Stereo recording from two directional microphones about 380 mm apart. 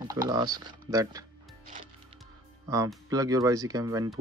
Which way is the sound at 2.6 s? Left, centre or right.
Centre.